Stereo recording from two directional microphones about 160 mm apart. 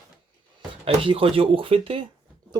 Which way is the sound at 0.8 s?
35° right (ahead or behind).